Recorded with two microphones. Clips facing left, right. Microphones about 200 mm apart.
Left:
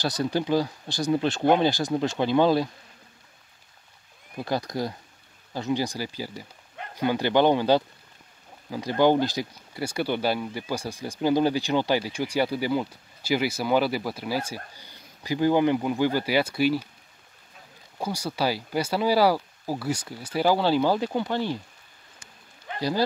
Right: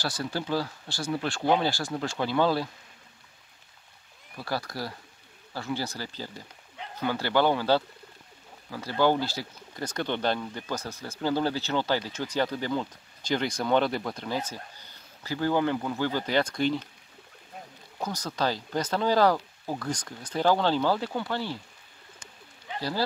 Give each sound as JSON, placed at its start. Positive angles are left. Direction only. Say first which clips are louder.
{"t": 0.0, "sound": "speech", "louder": "left 6 dB", "side_deg": 20}
{"t": 4.4, "sound": "speech", "louder": "left 5 dB", "side_deg": 20}
{"t": 17.9, "sound": "speech", "louder": "left 3 dB", "side_deg": 10}
{"t": 22.8, "sound": "speech", "louder": "left 5 dB", "side_deg": 15}